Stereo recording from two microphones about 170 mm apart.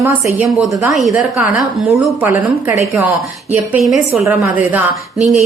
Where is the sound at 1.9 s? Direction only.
15° right (ahead or behind).